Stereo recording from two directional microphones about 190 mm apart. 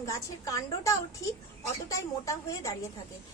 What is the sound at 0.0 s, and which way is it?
A woman's voice, 15° left (ahead or behind).